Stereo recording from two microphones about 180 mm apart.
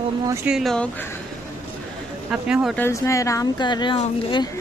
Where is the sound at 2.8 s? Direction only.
15° left (ahead or behind).